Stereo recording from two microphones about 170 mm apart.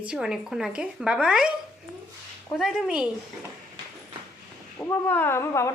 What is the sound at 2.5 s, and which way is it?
Speech, centre (ahead or behind).